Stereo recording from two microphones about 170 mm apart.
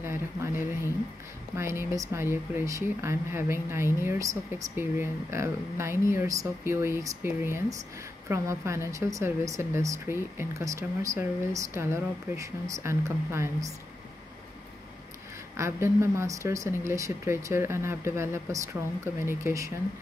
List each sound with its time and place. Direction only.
0.0 s speech: 15° right (ahead or behind)
15.5 s speech: 15° right (ahead or behind)